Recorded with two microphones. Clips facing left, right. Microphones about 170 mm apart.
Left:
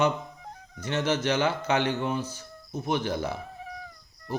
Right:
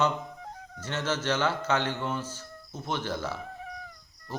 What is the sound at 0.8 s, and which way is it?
A man's voice, 15° left (ahead or behind).